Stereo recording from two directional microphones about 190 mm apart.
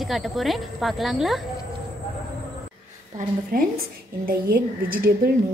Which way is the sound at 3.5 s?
50° right (ahead or behind).